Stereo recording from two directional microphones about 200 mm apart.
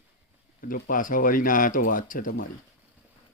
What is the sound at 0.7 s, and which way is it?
Speech, 45° left (ahead or behind).